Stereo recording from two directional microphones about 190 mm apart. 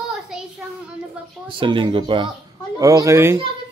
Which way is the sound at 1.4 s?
25° right (ahead or behind).